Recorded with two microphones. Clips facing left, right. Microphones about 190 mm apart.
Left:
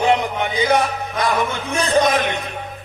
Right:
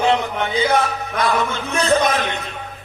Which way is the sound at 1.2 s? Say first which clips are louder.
Even; 15° left (ahead or behind).